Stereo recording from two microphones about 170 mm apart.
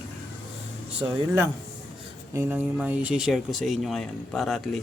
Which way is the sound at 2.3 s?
15° right (ahead or behind).